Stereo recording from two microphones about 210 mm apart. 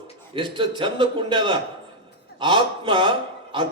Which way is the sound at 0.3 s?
25° right (ahead or behind).